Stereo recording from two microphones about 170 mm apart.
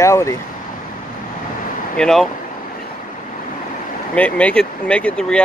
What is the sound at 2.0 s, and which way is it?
Speech, 5° left (ahead or behind).